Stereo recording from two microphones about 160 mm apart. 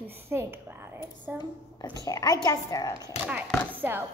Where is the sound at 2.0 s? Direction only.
20° left (ahead or behind).